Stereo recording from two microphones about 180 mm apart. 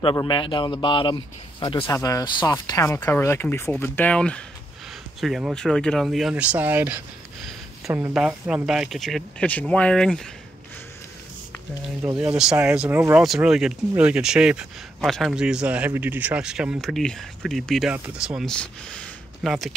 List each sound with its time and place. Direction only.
0.0 s speech: 25° left (ahead or behind); by 10.2 s 5° left (ahead or behind)
12.2 s speech: 5° right (ahead or behind)